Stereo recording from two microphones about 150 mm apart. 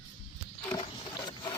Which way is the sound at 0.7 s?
30° left (ahead or behind).